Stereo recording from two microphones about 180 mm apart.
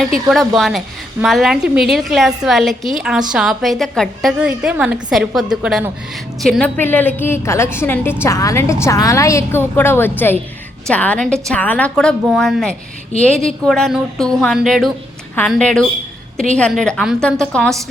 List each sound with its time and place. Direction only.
0.3 s a woman's voice: centre (ahead or behind)